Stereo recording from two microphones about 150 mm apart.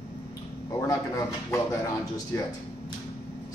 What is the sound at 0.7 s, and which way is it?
Speech, 20° left (ahead or behind).